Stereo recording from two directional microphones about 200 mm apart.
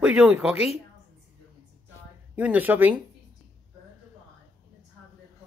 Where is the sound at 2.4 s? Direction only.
10° right (ahead or behind).